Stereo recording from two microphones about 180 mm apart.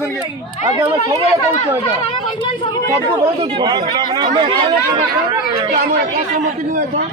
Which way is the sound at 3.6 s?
25° right (ahead or behind).